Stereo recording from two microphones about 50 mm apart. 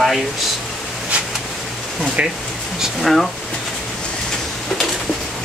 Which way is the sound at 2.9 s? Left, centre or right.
Centre.